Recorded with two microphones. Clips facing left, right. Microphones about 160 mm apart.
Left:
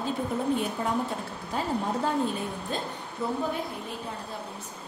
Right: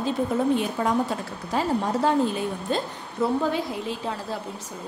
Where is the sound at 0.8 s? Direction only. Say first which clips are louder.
Right 5 dB; 90° right.